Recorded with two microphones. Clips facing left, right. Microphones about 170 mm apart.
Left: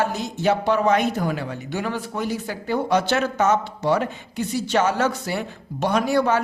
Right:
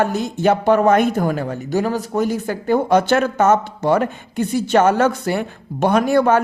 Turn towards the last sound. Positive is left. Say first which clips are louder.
# right 5 dB
turn(degrees=-50)  # may be behind; listen again after turning